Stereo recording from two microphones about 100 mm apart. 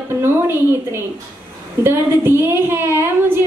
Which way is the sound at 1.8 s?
25° right (ahead or behind).